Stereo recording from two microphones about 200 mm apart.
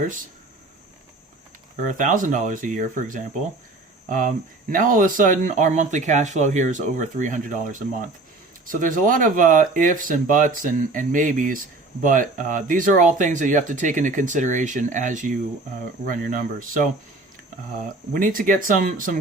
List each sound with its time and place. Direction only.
1.9 s speech: 40° right (ahead or behind)
4.7 s speech: 40° right (ahead or behind)
18.1 s speech: 45° right (ahead or behind)